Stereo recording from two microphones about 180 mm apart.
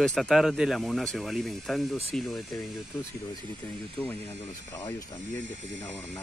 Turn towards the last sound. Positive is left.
turn(degrees=10)  # may be behind; listen again after turning